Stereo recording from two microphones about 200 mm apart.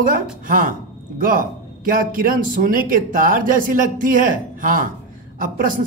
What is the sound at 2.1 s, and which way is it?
Speech, 45° right (ahead or behind).